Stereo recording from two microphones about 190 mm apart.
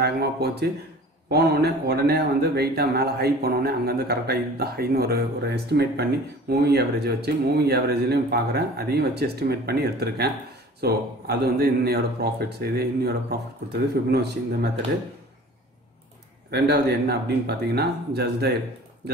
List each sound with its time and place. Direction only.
0.0 s speech: 60° right (ahead or behind)
16.4 s speech: 60° right (ahead or behind)